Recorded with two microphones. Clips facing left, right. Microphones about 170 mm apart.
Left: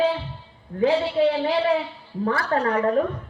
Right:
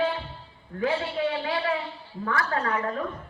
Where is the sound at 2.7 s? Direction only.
35° left (ahead or behind).